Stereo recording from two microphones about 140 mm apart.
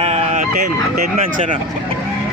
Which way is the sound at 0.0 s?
55° right (ahead or behind).